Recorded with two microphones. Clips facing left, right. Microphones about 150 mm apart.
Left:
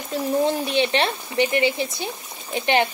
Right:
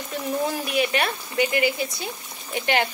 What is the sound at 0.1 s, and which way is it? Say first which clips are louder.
Speech: left 5 dB; 30° left (ahead or behind).